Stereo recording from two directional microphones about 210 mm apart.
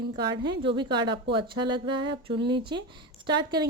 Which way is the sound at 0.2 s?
20° right (ahead or behind).